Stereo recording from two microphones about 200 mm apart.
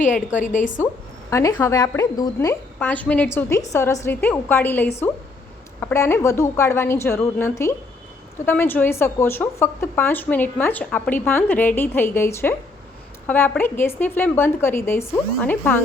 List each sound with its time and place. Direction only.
0.0 s a woman's voice: 40° left (ahead or behind)
1.3 s a woman's voice: 15° left (ahead or behind)